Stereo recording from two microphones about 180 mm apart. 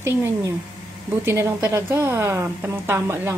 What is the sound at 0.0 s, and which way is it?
A woman's voice, 15° right (ahead or behind).